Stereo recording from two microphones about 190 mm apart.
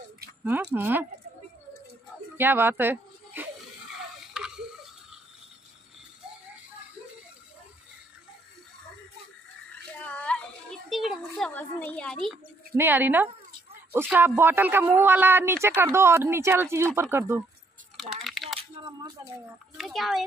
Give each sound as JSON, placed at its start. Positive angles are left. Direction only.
{"t": 0.4, "sound": "speech", "side_deg": -5}
{"t": 2.3, "sound": "a sound", "side_deg": -10}
{"t": 9.8, "sound": "children playing", "side_deg": 5}
{"t": 12.7, "sound": "speech", "side_deg": -10}
{"t": 17.9, "sound": "a sound", "side_deg": 0}
{"t": 18.6, "sound": "speech", "side_deg": -25}
{"t": 19.8, "sound": "a child's voice", "side_deg": 0}